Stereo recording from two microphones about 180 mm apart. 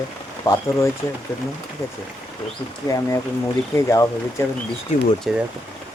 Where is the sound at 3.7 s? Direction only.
15° left (ahead or behind).